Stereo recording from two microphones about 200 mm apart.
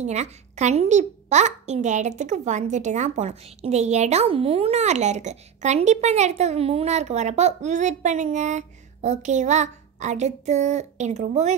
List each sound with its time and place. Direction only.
0.0 s a child's voice: 35° right (ahead or behind)